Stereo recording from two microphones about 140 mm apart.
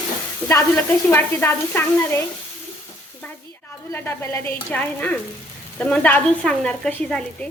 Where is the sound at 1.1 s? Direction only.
15° left (ahead or behind).